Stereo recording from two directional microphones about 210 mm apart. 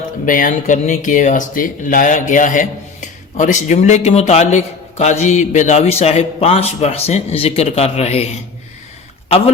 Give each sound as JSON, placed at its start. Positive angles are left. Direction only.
{"t": 0.3, "sound": "speech", "side_deg": 40}